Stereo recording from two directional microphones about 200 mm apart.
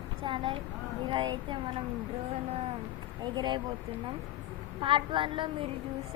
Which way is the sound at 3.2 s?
20° right (ahead or behind).